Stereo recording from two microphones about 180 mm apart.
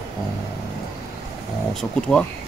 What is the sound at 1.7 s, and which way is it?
Speech, 5° left (ahead or behind).